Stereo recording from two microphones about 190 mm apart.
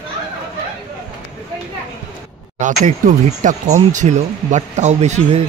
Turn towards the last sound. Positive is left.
turn(degrees=-35)  # may be behind; listen again after turning